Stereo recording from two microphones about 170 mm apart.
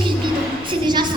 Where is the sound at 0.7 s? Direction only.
25° right (ahead or behind).